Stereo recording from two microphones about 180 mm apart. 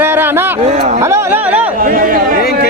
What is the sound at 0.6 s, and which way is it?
Speech, 40° right (ahead or behind).